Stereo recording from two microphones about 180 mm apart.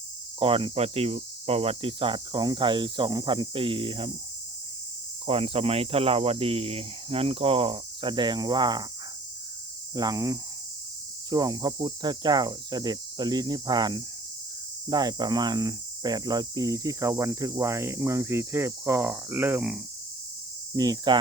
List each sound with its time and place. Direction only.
0.3 s speech: 30° right (ahead or behind)
5.2 s speech: 30° right (ahead or behind)
9.9 s speech: 20° right (ahead or behind)
14.8 s cricket: 20° right (ahead or behind)
20.7 s speech: 20° right (ahead or behind)